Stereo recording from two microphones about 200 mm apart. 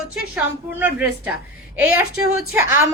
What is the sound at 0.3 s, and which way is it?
A woman's voice, 5° right (ahead or behind).